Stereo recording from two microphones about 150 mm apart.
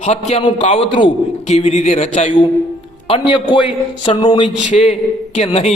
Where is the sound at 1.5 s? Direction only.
45° left (ahead or behind).